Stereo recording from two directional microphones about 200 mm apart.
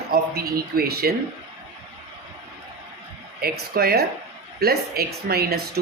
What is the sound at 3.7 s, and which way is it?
Speech, 50° right (ahead or behind).